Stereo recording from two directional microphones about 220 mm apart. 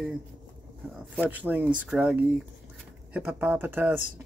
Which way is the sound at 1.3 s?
5° right (ahead or behind).